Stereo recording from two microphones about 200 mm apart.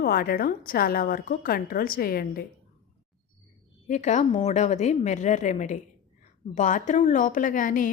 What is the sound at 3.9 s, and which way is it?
A woman's voice, 40° left (ahead or behind).